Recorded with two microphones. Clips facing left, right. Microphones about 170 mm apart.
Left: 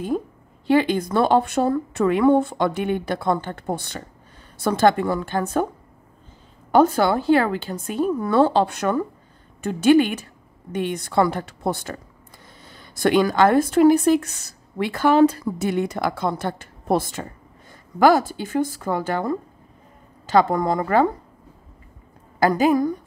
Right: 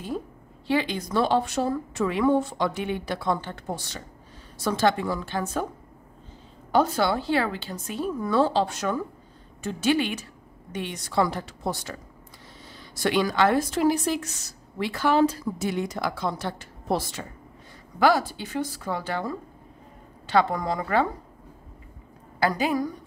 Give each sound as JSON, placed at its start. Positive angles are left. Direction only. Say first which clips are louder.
{"t": 0.7, "sound": "speech", "louder": "left 7 dB", "side_deg": 50}
{"t": 6.7, "sound": "speech", "louder": "left 6 dB", "side_deg": 50}
{"t": 22.4, "sound": "speech", "louder": "left 7 dB", "side_deg": 45}